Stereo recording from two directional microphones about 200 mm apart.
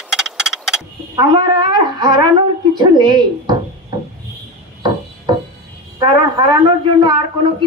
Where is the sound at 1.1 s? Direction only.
25° right (ahead or behind).